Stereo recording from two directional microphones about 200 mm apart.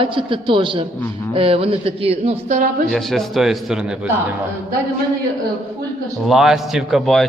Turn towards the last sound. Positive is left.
turn(degrees=0)  # may be behind; listen again after turning